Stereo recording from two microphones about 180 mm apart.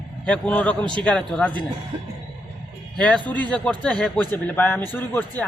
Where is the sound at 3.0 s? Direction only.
5° left (ahead or behind).